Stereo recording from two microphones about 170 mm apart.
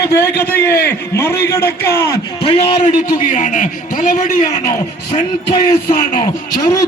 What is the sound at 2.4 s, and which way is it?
A man's voice, 30° left (ahead or behind).